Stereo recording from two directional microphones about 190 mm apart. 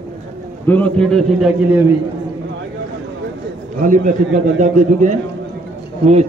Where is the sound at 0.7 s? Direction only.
5° left (ahead or behind).